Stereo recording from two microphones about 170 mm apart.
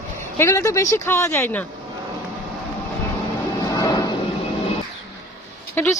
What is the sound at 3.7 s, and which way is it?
Vehicle, 25° left (ahead or behind).